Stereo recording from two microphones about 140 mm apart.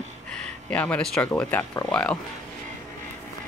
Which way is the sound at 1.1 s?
15° left (ahead or behind).